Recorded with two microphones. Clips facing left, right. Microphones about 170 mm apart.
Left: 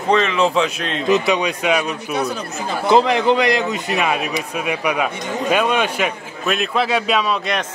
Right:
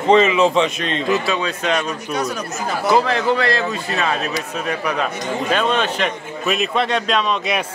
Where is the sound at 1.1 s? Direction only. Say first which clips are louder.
Left 5 dB; 20° left (ahead or behind).